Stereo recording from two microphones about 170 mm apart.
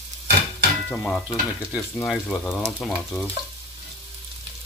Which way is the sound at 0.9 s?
5° left (ahead or behind).